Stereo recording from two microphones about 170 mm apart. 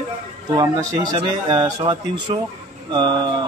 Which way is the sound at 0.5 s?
25° right (ahead or behind).